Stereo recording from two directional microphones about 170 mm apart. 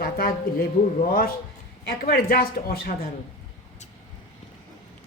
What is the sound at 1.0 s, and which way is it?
Speech, 60° left (ahead or behind).